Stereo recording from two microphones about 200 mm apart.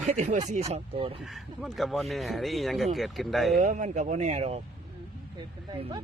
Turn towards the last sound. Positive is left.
turn(degrees=-20)  # may be behind; listen again after turning